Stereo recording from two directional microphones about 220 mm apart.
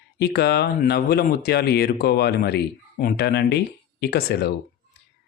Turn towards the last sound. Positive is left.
turn(degrees=45)  # may be behind; listen again after turning